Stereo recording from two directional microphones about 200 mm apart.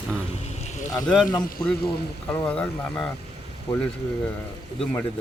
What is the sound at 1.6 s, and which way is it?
Speech, 15° left (ahead or behind).